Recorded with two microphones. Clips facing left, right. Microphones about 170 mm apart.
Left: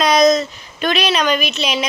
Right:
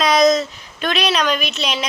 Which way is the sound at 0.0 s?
Centre (ahead or behind).